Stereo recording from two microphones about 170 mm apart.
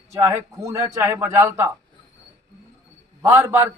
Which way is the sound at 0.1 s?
15° right (ahead or behind).